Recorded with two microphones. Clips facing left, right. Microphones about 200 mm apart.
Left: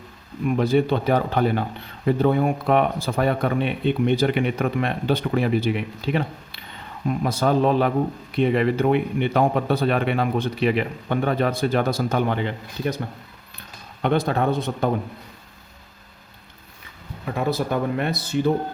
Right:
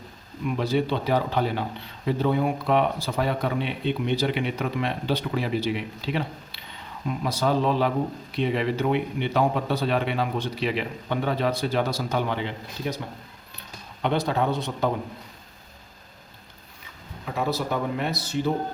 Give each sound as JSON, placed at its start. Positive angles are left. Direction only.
{"t": 0.4, "sound": "speech", "side_deg": 50}
{"t": 14.0, "sound": "speech", "side_deg": 50}
{"t": 17.3, "sound": "speech", "side_deg": 55}